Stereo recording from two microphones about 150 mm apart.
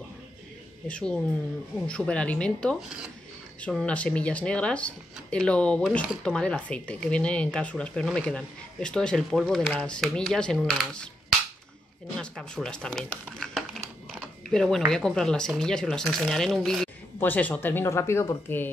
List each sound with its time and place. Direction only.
0.8 s speech: 5° left (ahead or behind)
12.2 s speech: 5° left (ahead or behind)
14.1 s a sound: 5° left (ahead or behind)
14.9 s speech: 5° left (ahead or behind)
17.2 s speech: 10° left (ahead or behind)